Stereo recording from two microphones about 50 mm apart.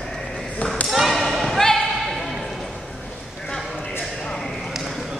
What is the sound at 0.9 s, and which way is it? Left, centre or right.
Basketball bounce, centre.